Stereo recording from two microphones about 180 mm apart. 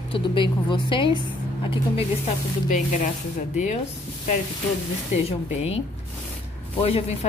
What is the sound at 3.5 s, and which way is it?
Speech, 40° left (ahead or behind).